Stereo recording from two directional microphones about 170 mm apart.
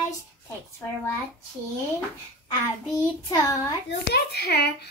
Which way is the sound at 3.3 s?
20° left (ahead or behind).